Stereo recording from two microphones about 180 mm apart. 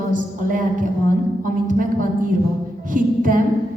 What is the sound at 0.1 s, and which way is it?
A woman's voice, 50° right (ahead or behind).